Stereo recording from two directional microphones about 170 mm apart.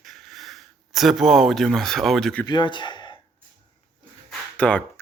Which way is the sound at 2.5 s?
25° left (ahead or behind).